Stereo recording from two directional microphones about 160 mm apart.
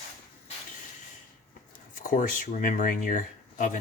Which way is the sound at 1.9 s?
55° left (ahead or behind).